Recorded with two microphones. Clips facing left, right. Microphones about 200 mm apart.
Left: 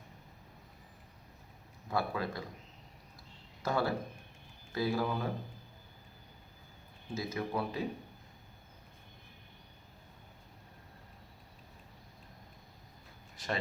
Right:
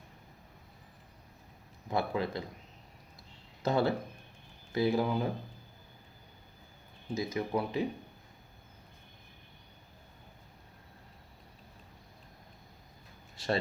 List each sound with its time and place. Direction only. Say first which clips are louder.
1.9 s speech: right 3 dB; 20° right (ahead or behind)
3.6 s speech: right 4 dB; 25° right (ahead or behind)
7.1 s speech: right 4 dB; 20° right (ahead or behind)
13.3 s a sound: right 5 dB; 30° right (ahead or behind)